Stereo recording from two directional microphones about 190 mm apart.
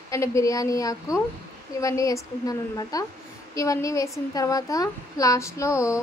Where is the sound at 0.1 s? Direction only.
15° left (ahead or behind).